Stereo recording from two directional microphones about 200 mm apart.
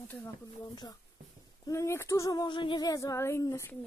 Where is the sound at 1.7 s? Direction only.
15° left (ahead or behind).